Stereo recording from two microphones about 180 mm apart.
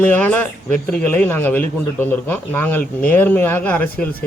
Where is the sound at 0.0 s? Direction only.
10° left (ahead or behind).